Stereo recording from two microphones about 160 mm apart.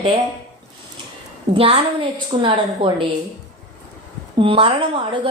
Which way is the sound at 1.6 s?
35° right (ahead or behind).